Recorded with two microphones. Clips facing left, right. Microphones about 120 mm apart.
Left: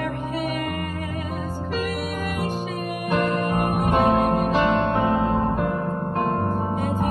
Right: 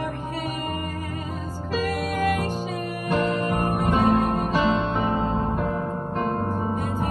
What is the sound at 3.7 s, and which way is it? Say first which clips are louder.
Music: left 1 dB; 55° left (ahead or behind).